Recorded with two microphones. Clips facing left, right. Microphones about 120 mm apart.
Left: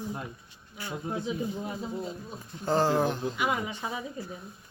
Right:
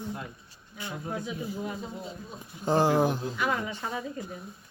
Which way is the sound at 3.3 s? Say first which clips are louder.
Even; 15° left (ahead or behind).